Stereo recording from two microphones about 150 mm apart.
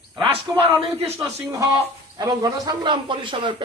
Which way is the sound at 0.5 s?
20° right (ahead or behind).